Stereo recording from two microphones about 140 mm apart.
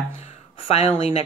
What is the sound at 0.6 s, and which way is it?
Speech, 45° left (ahead or behind).